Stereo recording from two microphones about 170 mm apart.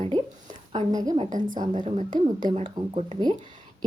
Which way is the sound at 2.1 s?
25° right (ahead or behind).